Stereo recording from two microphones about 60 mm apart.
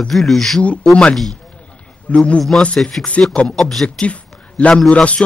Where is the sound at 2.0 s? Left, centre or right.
Centre.